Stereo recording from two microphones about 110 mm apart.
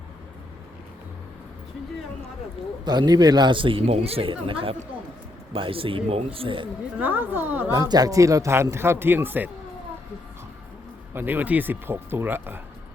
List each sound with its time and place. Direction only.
2.8 s speech: 40° right (ahead or behind)
7.0 s speech: 15° right (ahead or behind)
7.7 s speech: 35° right (ahead or behind); by 9.5 s 15° right (ahead or behind)
11.1 s speech: 20° right (ahead or behind)